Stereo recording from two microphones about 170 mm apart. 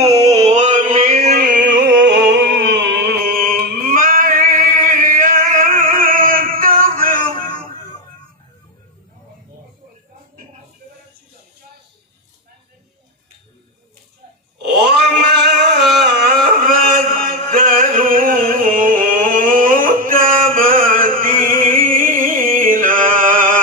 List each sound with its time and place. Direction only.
0.3 s a sound: 40° right (ahead or behind)
1.6 s music: 90° right
3.3 s music: 55° right (ahead or behind)
14.6 s cat: 75° right (ahead or behind)
16.6 s chant: 55° right (ahead or behind)